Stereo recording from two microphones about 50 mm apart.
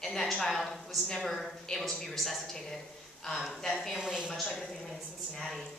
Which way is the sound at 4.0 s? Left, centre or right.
Centre.